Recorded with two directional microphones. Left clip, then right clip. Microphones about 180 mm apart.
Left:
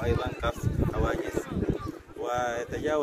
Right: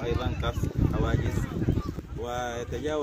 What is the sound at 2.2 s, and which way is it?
Speech, 10° left (ahead or behind).